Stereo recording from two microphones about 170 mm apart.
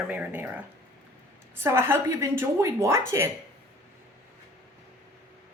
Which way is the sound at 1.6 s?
15° right (ahead or behind).